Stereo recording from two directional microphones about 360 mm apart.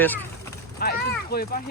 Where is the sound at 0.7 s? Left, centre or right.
Left.